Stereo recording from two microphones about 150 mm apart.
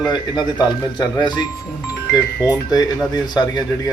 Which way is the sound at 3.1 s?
25° left (ahead or behind).